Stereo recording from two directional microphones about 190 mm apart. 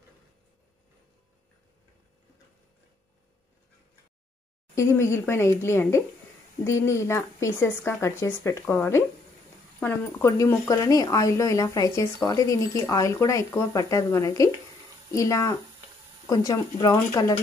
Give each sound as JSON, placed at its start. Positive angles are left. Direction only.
{"t": 4.7, "sound": "speech", "side_deg": 15}